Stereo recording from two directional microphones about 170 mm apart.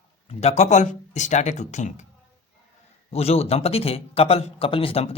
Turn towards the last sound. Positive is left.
turn(degrees=35)  # may be behind; listen again after turning